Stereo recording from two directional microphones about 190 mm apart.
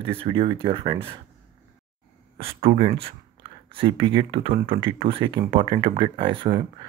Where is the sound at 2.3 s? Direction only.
30° right (ahead or behind).